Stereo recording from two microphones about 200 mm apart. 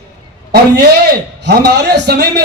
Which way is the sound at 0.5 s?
50° right (ahead or behind).